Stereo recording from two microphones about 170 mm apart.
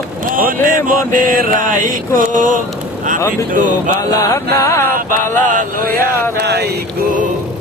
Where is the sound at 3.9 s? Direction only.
20° left (ahead or behind).